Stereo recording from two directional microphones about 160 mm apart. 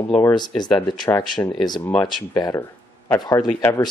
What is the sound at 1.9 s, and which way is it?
Speech, 10° left (ahead or behind).